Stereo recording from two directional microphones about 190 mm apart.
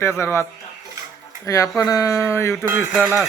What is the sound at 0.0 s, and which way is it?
Speech, 15° left (ahead or behind).